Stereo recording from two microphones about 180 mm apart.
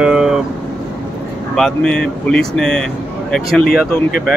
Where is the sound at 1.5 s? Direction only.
5° left (ahead or behind).